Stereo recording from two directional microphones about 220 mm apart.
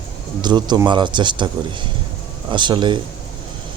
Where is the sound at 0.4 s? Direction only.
20° right (ahead or behind).